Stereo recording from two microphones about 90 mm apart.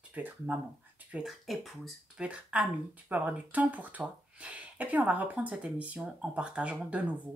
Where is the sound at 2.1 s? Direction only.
15° right (ahead or behind).